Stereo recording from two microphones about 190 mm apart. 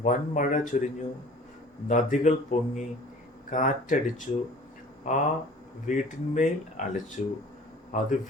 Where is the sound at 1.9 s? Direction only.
40° left (ahead or behind).